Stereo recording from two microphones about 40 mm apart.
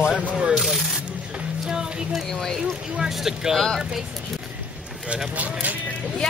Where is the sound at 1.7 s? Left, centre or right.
Centre.